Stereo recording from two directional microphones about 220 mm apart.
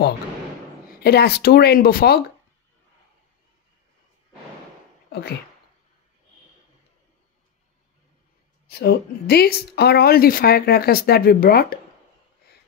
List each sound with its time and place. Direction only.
1.0 s speech: 45° left (ahead or behind)
8.6 s speech: 45° left (ahead or behind)